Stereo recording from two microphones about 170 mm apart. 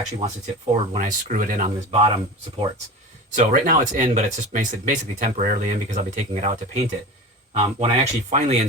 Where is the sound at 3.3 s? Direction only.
50° right (ahead or behind).